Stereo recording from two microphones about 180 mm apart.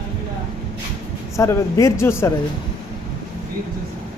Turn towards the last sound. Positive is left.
turn(degrees=15)  # may be behind; listen again after turning